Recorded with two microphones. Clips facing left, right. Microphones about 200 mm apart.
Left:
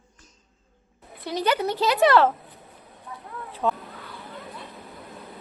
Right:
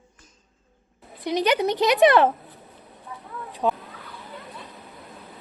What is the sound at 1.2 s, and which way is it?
Speech, 15° right (ahead or behind).